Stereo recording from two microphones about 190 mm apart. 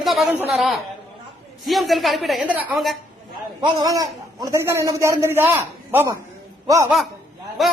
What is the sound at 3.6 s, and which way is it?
A man's voice, 20° right (ahead or behind).